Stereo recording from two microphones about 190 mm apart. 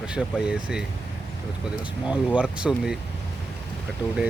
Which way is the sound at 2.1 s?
5° right (ahead or behind).